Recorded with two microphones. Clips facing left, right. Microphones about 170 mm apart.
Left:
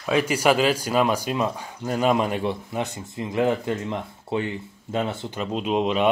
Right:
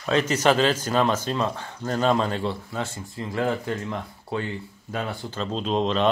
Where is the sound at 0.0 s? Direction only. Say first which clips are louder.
Even; 10° left (ahead or behind).